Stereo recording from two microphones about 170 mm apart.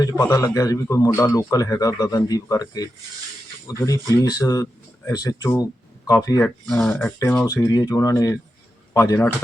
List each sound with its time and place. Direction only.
0.0 s a man's voice: 20° left (ahead or behind)
6.4 s a man's voice: 5° left (ahead or behind)